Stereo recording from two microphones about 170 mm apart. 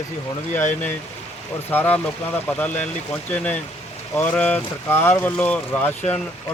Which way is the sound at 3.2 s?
10° left (ahead or behind).